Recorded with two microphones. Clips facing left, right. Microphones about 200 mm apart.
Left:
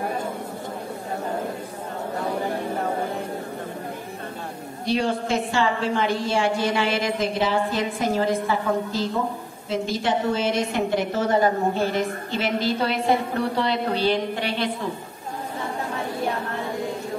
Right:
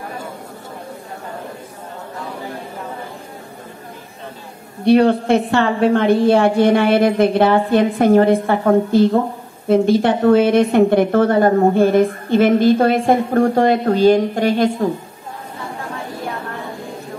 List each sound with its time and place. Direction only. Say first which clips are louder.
4.8 s a woman's voice: right 11 dB; 60° right (ahead or behind); by 14.9 s 45° right (ahead or behind)